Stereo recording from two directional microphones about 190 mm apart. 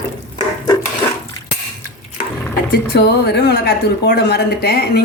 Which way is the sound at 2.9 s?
60° left (ahead or behind).